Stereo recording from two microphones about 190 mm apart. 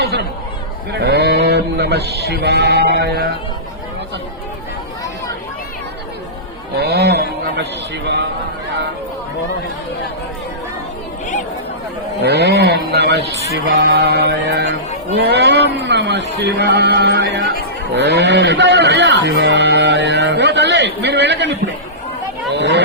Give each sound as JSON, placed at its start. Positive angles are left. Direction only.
{"t": 0.9, "sound": "speech", "side_deg": -60}
{"t": 6.7, "sound": "a man's voice", "side_deg": -60}
{"t": 12.2, "sound": "speech", "side_deg": -60}